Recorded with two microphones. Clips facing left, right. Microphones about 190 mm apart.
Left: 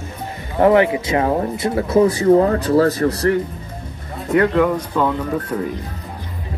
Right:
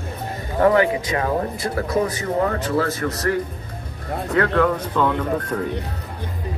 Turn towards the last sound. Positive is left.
turn(degrees=10)  # may be behind; listen again after turning